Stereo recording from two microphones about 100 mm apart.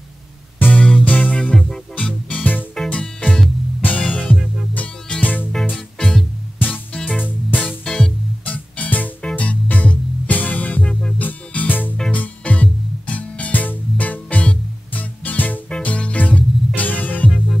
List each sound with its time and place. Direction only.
0.6 s music: 15° left (ahead or behind)